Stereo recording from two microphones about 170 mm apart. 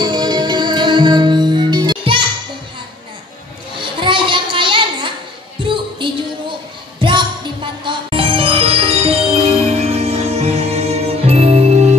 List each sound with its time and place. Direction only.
0.0 s music: 25° right (ahead or behind)
3.7 s a sound: 30° right (ahead or behind)
7.0 s music: 30° right (ahead or behind)